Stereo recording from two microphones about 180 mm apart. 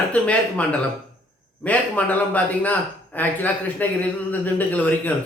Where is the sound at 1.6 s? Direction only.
10° left (ahead or behind).